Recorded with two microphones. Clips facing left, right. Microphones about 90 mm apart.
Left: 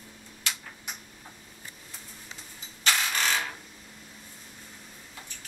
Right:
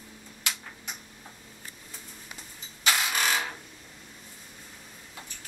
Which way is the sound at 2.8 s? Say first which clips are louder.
Right 1 dB; 10° right (ahead or behind).